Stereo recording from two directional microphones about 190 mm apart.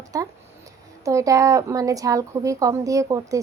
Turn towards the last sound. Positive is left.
turn(degrees=-15)  # may be behind; listen again after turning